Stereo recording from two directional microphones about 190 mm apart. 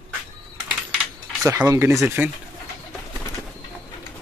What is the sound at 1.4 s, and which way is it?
Speech, 15° right (ahead or behind).